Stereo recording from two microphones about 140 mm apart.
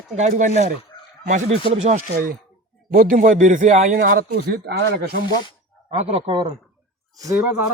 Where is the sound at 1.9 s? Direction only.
90° right.